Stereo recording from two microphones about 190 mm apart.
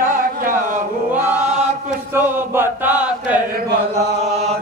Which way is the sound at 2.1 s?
10° right (ahead or behind).